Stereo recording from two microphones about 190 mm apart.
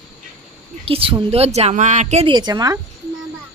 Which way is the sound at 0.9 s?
30° right (ahead or behind).